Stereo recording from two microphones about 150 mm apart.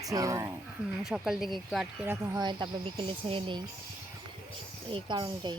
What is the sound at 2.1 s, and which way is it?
Speech, 20° right (ahead or behind).